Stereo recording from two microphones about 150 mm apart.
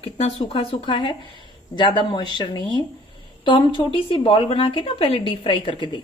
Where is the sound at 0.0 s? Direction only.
35° left (ahead or behind).